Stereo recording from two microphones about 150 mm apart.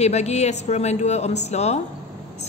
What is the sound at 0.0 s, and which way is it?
Speech, 45° left (ahead or behind).